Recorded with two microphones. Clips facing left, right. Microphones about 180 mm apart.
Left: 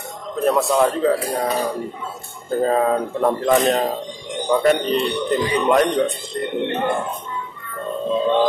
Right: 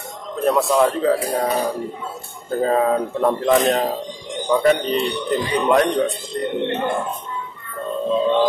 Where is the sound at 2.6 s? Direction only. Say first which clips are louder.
Even; centre (ahead or behind).